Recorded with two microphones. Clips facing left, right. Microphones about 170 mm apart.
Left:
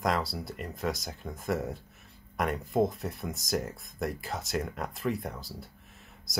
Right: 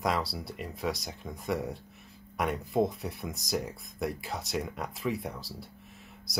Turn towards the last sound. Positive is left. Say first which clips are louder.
# left 1 dB
turn(degrees=0)  # may be behind; listen again after turning